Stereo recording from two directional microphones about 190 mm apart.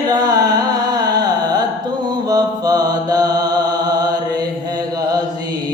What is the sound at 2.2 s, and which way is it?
Mantra, 20° right (ahead or behind).